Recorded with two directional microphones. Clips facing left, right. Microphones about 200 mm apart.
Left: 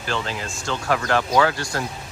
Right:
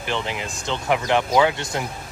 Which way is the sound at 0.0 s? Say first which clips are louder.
Right 1 dB; 20° right (ahead or behind).